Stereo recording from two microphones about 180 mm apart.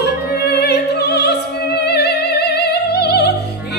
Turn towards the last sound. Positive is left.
turn(degrees=65)  # may be behind; listen again after turning